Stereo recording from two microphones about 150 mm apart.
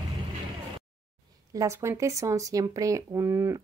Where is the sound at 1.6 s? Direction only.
20° right (ahead or behind).